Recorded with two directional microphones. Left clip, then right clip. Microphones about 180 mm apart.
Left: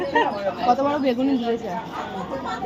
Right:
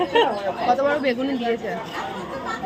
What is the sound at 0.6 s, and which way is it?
Speech, 15° left (ahead or behind).